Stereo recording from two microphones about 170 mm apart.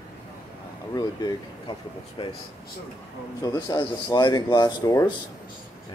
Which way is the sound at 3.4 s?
20° left (ahead or behind).